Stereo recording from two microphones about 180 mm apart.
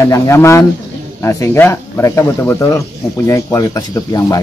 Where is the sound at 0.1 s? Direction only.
15° left (ahead or behind).